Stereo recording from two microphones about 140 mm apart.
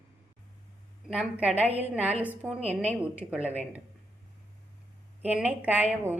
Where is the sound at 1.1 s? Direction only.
10° right (ahead or behind).